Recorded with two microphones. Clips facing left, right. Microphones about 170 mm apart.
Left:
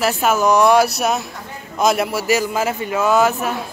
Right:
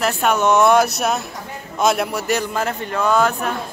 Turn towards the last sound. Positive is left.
turn(degrees=5)  # may be behind; listen again after turning